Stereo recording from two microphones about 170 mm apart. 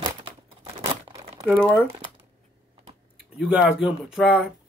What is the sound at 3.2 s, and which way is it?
Speech, 5° right (ahead or behind).